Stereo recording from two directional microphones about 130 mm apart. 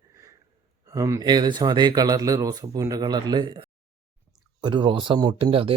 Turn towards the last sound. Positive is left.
turn(degrees=-45)  # may be behind; listen again after turning